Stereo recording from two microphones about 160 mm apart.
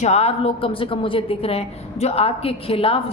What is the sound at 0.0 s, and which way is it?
A woman's voice, 45° left (ahead or behind).